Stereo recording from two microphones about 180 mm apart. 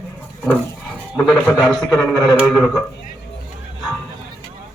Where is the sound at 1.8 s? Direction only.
20° left (ahead or behind).